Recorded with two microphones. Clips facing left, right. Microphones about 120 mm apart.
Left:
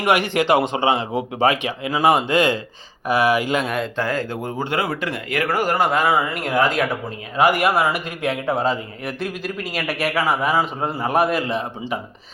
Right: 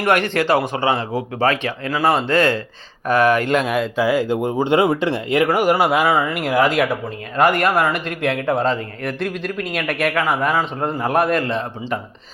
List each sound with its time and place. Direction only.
0.0 s a man's voice: 15° left (ahead or behind)